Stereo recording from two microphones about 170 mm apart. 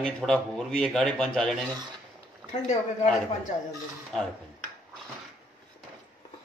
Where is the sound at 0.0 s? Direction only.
5° left (ahead or behind).